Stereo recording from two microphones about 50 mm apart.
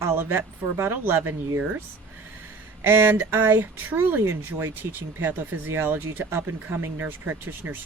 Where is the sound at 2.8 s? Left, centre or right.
Right.